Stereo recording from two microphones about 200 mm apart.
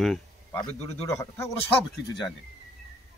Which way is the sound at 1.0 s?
15° left (ahead or behind).